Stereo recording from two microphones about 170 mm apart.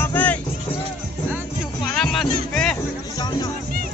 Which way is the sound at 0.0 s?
10° left (ahead or behind).